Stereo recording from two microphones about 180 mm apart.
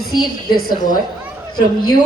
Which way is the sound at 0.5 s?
55° left (ahead or behind).